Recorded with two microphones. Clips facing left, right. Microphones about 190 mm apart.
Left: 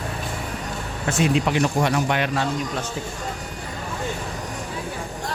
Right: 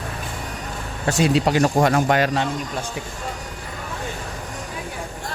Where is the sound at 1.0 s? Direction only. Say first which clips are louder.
Right 2 dB; 35° right (ahead or behind).